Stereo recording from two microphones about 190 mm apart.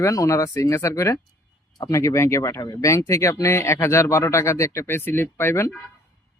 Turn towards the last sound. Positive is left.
turn(degrees=15)  # may be behind; listen again after turning